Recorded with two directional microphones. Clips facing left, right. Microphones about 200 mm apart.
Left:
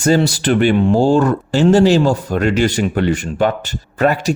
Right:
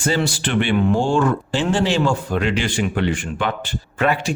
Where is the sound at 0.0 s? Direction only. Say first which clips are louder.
Left 7 dB; 40° left (ahead or behind).